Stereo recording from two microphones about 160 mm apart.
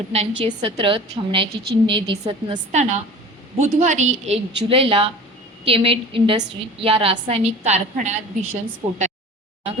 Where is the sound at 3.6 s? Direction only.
45° right (ahead or behind).